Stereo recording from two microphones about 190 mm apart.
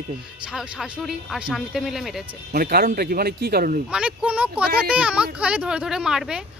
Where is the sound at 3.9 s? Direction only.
5° right (ahead or behind).